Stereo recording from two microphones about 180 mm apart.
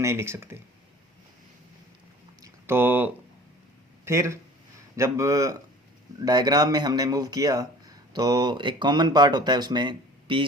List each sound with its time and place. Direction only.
0.0 s speech: 15° right (ahead or behind)
2.4 s a sound: 15° right (ahead or behind)
4.0 s a man's voice: 15° right (ahead or behind)